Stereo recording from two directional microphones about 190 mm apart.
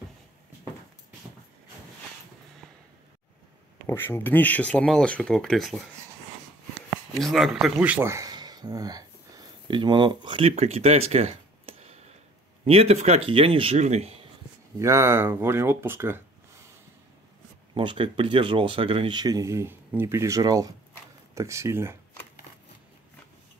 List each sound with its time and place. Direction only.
3.8 s speech: 10° left (ahead or behind)
7.2 s speech: centre (ahead or behind); by 14.1 s 35° right (ahead or behind)
14.8 s speech: 15° right (ahead or behind)
17.7 s speech: 25° right (ahead or behind)